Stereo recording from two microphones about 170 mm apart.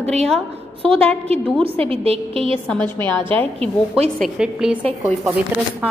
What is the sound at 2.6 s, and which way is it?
Speech, 10° left (ahead or behind).